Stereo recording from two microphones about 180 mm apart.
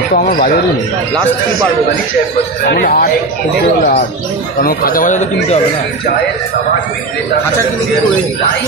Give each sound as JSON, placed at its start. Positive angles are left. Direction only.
{"t": 0.3, "sound": "speech", "side_deg": 50}
{"t": 2.6, "sound": "speech", "side_deg": 65}
{"t": 4.6, "sound": "speech", "side_deg": 50}